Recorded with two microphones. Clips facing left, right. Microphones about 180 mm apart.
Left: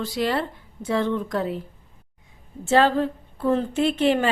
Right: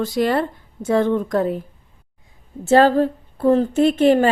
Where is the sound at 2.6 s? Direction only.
40° right (ahead or behind).